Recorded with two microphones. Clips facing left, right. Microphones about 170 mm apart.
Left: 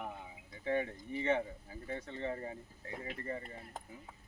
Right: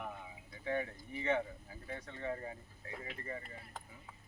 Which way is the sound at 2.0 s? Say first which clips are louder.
Right 1 dB; 30° left (ahead or behind).